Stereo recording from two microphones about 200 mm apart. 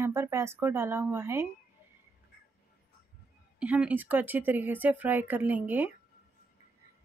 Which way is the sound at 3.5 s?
5° right (ahead or behind).